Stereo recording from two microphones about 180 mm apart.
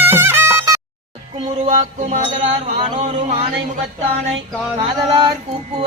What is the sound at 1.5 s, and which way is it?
Mantra, 40° right (ahead or behind).